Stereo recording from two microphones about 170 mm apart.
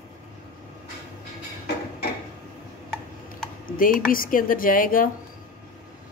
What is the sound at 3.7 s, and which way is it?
Speech, 55° left (ahead or behind).